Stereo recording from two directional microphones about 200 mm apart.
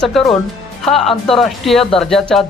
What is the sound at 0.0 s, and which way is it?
Speech, centre (ahead or behind).